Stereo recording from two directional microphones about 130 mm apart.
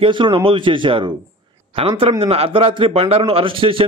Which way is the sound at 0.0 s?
40° right (ahead or behind).